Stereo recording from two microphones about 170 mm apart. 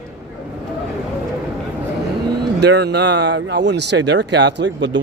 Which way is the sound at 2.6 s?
85° right.